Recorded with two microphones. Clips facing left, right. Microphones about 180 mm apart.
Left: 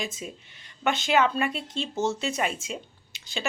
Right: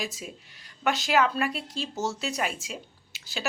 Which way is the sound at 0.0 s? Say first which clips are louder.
Left 1 dB; centre (ahead or behind).